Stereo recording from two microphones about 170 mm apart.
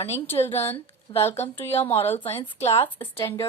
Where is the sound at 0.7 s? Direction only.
35° left (ahead or behind).